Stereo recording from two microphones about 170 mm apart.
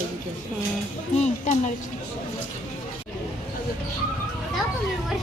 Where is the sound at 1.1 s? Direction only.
45° left (ahead or behind).